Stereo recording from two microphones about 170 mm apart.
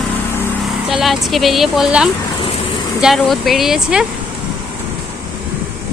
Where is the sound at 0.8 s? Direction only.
Centre (ahead or behind).